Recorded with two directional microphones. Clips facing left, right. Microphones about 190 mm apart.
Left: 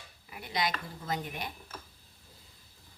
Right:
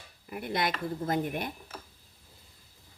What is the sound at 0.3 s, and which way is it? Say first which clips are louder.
A woman's voice: right 3 dB; 50° right (ahead or behind).